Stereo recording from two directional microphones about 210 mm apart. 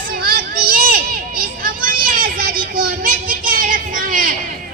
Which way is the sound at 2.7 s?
40° right (ahead or behind).